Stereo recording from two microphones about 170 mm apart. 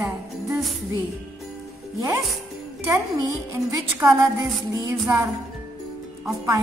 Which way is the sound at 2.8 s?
15° right (ahead or behind).